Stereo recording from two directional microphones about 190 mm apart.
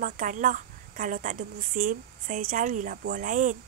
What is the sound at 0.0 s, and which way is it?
Speech, 45° right (ahead or behind).